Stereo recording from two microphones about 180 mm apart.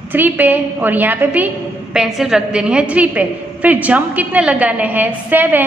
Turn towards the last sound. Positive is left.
turn(degrees=-10)  # may be behind; listen again after turning